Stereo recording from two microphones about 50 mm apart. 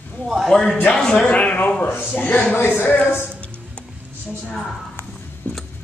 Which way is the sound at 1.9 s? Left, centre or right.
Left.